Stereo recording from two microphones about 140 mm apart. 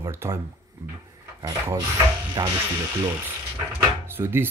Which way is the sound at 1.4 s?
25° right (ahead or behind).